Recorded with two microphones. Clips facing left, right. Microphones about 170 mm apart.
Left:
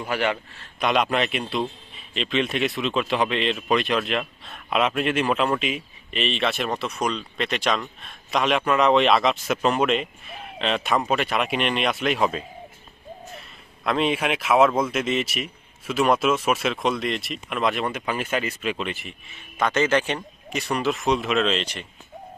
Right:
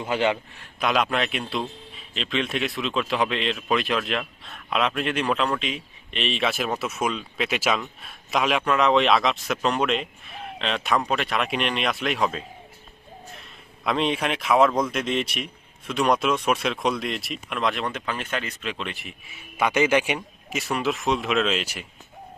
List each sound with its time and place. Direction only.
0.0 s a man's voice: 20° right (ahead or behind)
0.8 s a man's voice: centre (ahead or behind)
13.8 s a man's voice: centre (ahead or behind)